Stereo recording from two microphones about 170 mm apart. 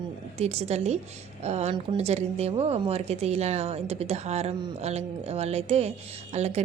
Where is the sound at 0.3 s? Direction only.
40° right (ahead or behind).